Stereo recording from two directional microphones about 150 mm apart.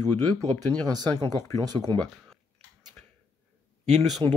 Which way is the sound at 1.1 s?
15° left (ahead or behind).